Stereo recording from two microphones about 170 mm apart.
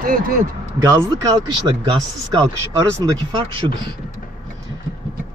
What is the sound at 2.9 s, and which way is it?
Speech, 25° right (ahead or behind).